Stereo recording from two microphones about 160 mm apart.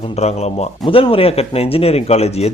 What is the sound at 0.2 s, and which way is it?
A man's voice, 45° left (ahead or behind).